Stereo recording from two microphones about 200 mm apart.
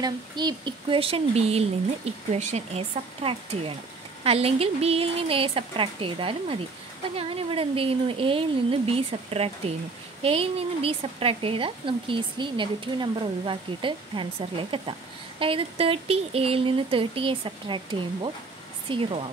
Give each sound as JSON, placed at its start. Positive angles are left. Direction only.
{"t": 0.0, "sound": "a woman's voice", "side_deg": -20}